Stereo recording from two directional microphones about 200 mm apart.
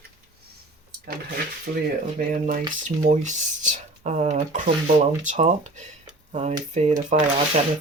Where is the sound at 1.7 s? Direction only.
45° right (ahead or behind).